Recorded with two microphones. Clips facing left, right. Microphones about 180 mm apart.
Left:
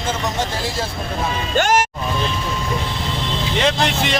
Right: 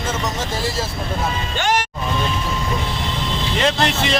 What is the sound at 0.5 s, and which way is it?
Speech, centre (ahead or behind).